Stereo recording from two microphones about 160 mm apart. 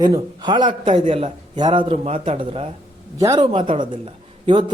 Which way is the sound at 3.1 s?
20° right (ahead or behind).